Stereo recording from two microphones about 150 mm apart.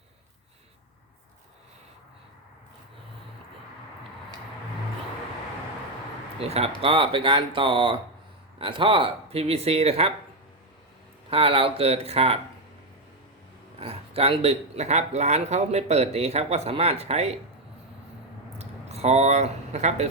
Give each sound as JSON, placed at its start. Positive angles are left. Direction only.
{"t": 6.4, "sound": "speech", "side_deg": -40}
{"t": 11.3, "sound": "speech", "side_deg": -40}
{"t": 13.7, "sound": "speech", "side_deg": -40}
{"t": 18.5, "sound": "a sound", "side_deg": -45}